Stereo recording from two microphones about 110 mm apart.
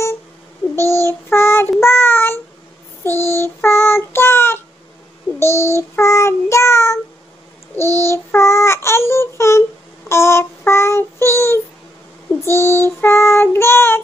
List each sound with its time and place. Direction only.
0.7 s child singing: 25° left (ahead or behind)